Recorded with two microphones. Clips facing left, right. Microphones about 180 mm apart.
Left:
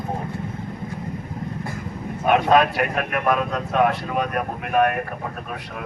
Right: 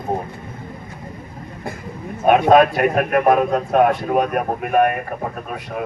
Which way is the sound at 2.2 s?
50° right (ahead or behind).